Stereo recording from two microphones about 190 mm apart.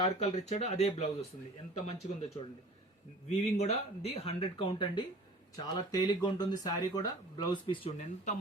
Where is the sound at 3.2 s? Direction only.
35° left (ahead or behind).